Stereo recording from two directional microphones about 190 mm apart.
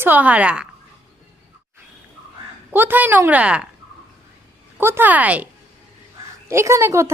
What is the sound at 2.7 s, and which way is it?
Speech, 10° right (ahead or behind).